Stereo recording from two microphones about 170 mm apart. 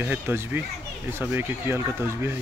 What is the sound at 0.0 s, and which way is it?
Speech, 10° right (ahead or behind).